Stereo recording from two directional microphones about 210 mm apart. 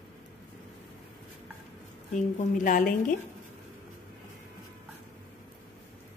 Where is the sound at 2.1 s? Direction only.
40° left (ahead or behind).